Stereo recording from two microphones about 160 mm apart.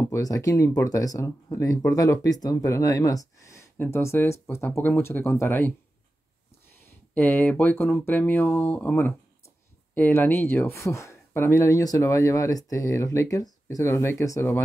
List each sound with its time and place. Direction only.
0.1 s speech: 20° left (ahead or behind)
7.2 s speech: 15° left (ahead or behind)